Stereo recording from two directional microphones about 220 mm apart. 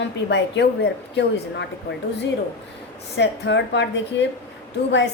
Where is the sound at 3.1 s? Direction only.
50° left (ahead or behind).